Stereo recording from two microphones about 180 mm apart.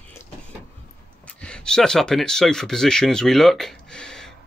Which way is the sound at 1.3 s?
5° left (ahead or behind).